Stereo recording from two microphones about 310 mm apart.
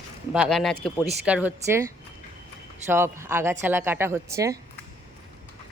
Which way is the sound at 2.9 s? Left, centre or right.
Centre.